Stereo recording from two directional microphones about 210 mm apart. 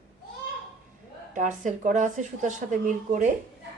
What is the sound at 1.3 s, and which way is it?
Speech, 35° right (ahead or behind).